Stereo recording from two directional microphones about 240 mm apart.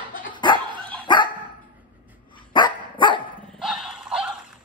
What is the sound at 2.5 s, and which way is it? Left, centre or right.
Dog, centre.